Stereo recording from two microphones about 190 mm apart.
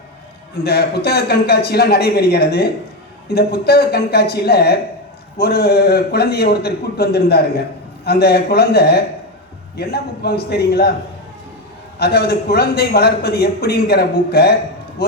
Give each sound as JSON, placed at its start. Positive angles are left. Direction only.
{"t": 0.6, "sound": "a man's voice", "side_deg": 55}
{"t": 11.9, "sound": "a man's voice", "side_deg": 55}